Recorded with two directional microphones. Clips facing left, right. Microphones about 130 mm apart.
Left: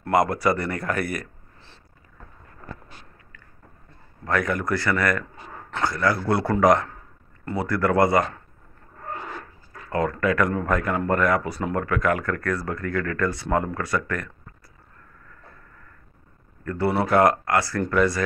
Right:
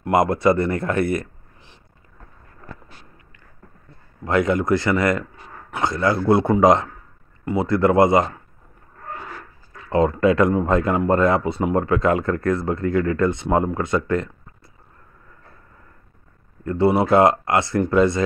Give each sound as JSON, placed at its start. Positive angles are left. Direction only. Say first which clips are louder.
{"t": 0.0, "sound": "speech", "louder": "right 3 dB", "side_deg": -25}
{"t": 4.2, "sound": "speech", "louder": "right 5 dB", "side_deg": -20}
{"t": 9.8, "sound": "speech", "louder": "right 6 dB", "side_deg": -20}
{"t": 16.6, "sound": "speech", "louder": "right 5 dB", "side_deg": -20}